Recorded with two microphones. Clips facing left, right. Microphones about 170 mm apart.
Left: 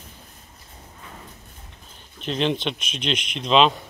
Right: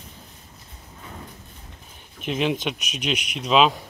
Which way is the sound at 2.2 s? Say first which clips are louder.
Even; 10° right (ahead or behind).